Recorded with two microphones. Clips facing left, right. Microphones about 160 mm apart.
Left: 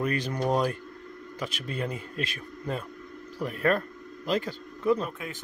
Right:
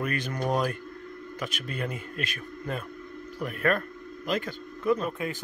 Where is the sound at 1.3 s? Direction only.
30° left (ahead or behind).